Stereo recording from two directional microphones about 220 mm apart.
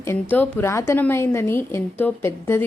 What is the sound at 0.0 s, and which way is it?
A woman's voice, 10° left (ahead or behind).